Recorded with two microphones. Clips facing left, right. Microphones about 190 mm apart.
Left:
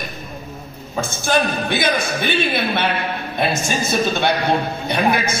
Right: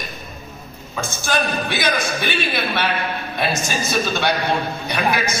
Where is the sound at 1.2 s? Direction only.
25° left (ahead or behind).